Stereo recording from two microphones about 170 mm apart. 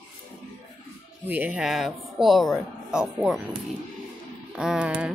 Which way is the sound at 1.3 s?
10° right (ahead or behind).